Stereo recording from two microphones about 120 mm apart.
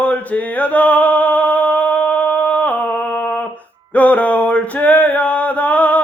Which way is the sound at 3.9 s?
10° left (ahead or behind).